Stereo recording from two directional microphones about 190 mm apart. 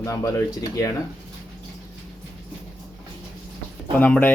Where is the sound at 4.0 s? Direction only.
10° left (ahead or behind).